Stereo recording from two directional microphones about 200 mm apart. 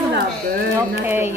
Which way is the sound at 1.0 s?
10° right (ahead or behind).